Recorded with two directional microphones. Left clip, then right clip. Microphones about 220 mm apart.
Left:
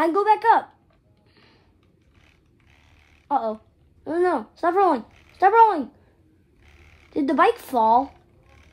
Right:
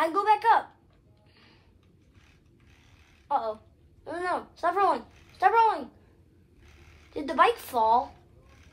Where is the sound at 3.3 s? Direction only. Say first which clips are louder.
Left 5 dB; 45° left (ahead or behind).